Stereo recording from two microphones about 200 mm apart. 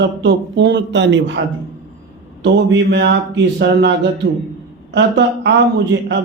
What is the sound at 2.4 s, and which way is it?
A man's voice, 60° right (ahead or behind).